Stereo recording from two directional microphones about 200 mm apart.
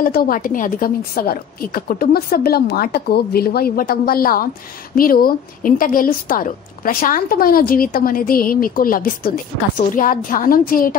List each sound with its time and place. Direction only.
0.0 s a woman's voice: 45° left (ahead or behind)